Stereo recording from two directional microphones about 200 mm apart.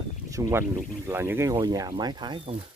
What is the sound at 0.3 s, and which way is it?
Speech, 15° right (ahead or behind).